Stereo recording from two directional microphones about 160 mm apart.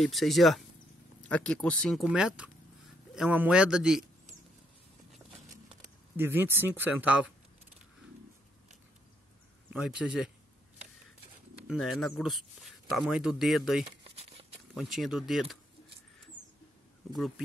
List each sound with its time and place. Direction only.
0.0 s a man's voice: centre (ahead or behind)
6.1 s speech: 15° right (ahead or behind)
9.7 s a man's voice: 5° right (ahead or behind)
11.6 s a man's voice: centre (ahead or behind)
14.1 s a sound: 40° right (ahead or behind)
14.7 s a man's voice: centre (ahead or behind)